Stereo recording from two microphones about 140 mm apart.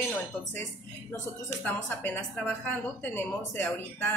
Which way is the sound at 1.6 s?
10° left (ahead or behind).